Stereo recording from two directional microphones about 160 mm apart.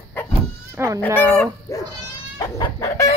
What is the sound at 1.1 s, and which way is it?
Speech, 5° left (ahead or behind).